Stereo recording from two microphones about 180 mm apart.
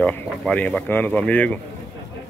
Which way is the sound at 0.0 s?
10° left (ahead or behind).